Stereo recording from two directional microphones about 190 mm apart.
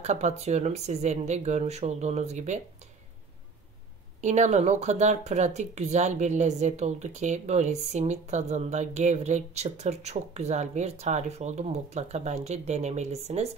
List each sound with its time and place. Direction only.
0.0 s speech: 35° right (ahead or behind)
4.2 s speech: 40° right (ahead or behind)